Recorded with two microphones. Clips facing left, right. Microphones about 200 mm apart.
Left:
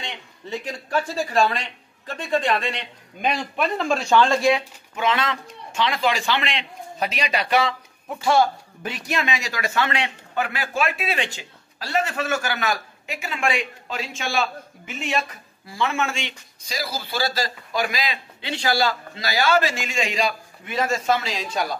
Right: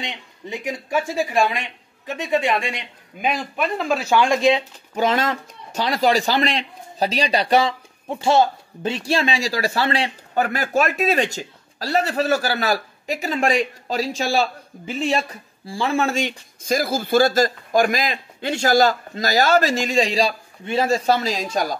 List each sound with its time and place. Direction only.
0.0 s a man's voice: 15° right (ahead or behind)
4.9 s a man's voice: 40° right (ahead or behind)